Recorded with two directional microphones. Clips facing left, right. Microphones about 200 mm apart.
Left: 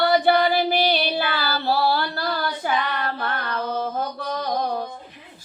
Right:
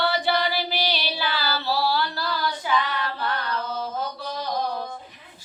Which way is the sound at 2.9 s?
55° left (ahead or behind).